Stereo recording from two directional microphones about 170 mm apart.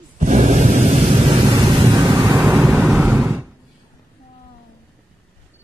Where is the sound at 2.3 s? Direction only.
5° right (ahead or behind).